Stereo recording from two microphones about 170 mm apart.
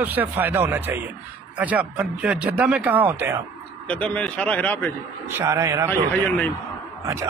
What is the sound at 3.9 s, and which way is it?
A man's voice, 10° left (ahead or behind).